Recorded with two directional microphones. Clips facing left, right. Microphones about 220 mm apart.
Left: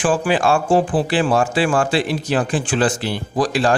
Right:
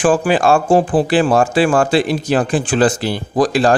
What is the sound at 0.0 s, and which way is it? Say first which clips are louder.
Speech: right 4 dB; 40° right (ahead or behind).